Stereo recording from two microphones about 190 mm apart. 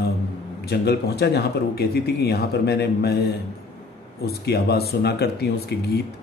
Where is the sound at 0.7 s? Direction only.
60° left (ahead or behind).